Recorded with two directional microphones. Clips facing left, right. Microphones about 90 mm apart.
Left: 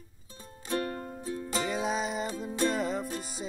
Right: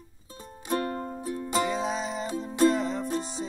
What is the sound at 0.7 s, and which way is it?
Music, 30° right (ahead or behind).